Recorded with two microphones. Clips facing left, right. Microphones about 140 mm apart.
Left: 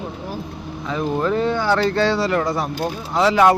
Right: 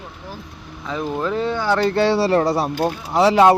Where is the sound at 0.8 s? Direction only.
Centre (ahead or behind).